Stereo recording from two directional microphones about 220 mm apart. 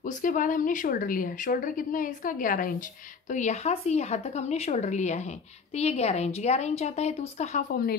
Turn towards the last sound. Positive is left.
turn(degrees=40)  # may be behind; listen again after turning